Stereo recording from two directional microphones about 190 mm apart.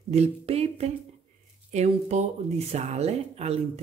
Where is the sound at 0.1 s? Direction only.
35° right (ahead or behind).